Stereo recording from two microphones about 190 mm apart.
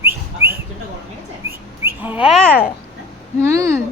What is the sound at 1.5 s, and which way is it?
Bird, 10° right (ahead or behind).